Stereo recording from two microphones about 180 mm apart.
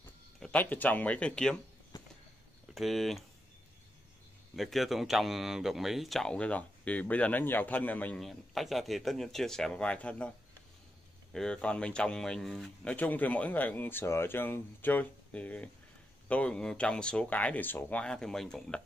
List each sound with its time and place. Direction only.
0.4 s speech: 5° left (ahead or behind)
2.7 s speech: centre (ahead or behind)
4.6 s speech: centre (ahead or behind)
11.3 s speech: 5° left (ahead or behind)